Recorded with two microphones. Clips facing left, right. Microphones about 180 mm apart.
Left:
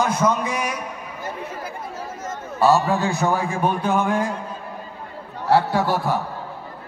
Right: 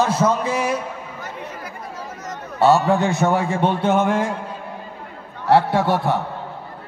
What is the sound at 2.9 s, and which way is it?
A man's voice, 20° right (ahead or behind).